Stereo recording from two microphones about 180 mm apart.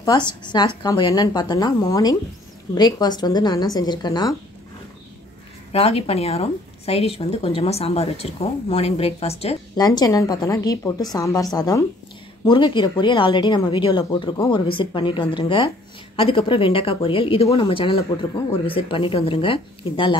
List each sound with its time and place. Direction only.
0.0 s speech: 25° left (ahead or behind)
5.7 s a woman's voice: 35° left (ahead or behind)
9.8 s speech: 20° left (ahead or behind)